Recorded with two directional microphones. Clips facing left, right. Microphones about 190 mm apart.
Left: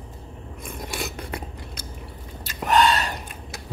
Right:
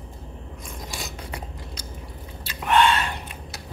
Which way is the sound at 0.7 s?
60° left (ahead or behind).